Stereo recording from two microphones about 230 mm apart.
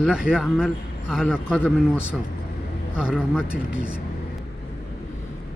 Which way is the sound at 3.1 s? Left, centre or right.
Centre.